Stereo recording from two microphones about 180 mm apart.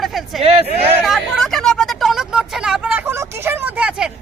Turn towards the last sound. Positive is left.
turn(degrees=-5)  # may be behind; listen again after turning